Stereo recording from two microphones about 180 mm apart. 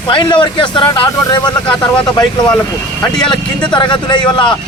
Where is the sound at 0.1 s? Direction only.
25° left (ahead or behind).